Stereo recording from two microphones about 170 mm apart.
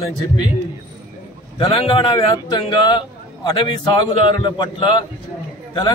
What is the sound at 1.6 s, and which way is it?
A man's voice, 30° left (ahead or behind).